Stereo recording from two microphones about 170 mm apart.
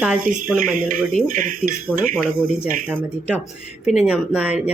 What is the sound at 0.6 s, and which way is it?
Speech, 55° right (ahead or behind).